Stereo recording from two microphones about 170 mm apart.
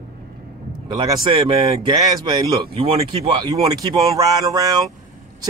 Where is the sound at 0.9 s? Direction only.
25° right (ahead or behind).